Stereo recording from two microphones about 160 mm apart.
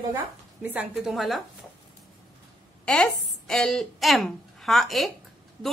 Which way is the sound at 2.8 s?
5° left (ahead or behind).